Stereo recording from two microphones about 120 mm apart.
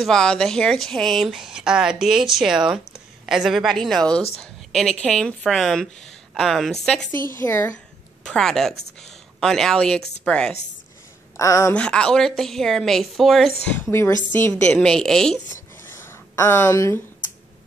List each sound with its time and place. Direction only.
0.0 s speech: 5° left (ahead or behind)
7.1 s a woman's voice: 20° left (ahead or behind)
8.2 s a woman's voice: 5° left (ahead or behind)
11.3 s a woman's voice: 25° left (ahead or behind)
11.7 s speech: 10° left (ahead or behind)
13.7 s a woman's voice: 15° left (ahead or behind)
14.5 s speech: 5° left (ahead or behind)
16.1 s a woman's voice: 20° left (ahead or behind)